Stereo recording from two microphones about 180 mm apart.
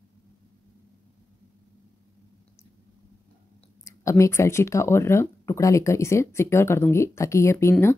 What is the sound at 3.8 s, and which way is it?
Speech, 15° left (ahead or behind).